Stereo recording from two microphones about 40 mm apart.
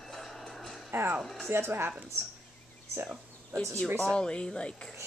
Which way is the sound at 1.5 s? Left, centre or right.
Right.